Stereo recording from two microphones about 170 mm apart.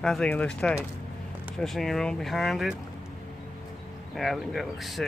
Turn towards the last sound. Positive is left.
turn(degrees=0)  # may be behind; listen again after turning